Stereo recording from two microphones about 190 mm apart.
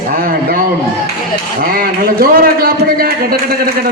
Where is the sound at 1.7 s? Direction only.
50° right (ahead or behind).